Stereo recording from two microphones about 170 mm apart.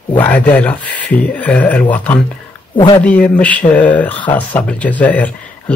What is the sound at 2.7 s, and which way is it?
Speech, 30° left (ahead or behind).